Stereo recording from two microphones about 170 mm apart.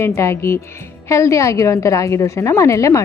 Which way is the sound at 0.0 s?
15° left (ahead or behind).